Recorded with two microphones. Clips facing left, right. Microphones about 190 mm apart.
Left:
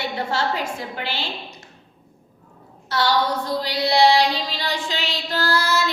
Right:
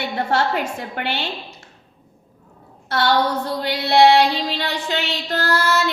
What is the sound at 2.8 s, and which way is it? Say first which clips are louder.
Speech: right 2 dB; 60° right (ahead or behind).